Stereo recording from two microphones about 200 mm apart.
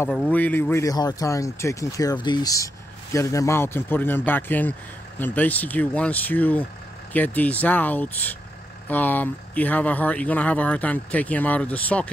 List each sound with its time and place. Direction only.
0.0 s speech: 5° left (ahead or behind)